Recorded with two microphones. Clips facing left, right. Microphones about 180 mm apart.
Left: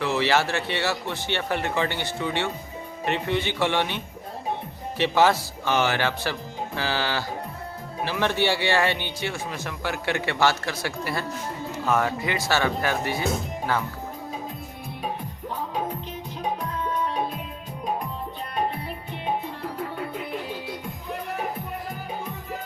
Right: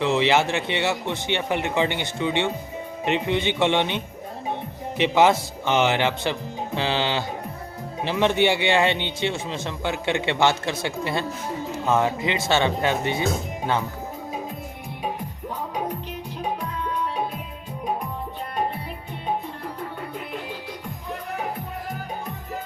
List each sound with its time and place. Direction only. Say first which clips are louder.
0.0 s speech: right 3 dB; 20° right (ahead or behind)